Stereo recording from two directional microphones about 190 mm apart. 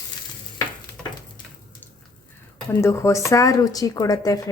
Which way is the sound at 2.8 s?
15° left (ahead or behind).